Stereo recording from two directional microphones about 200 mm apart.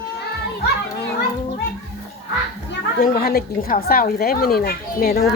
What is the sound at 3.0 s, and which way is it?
A woman's voice, 50° left (ahead or behind).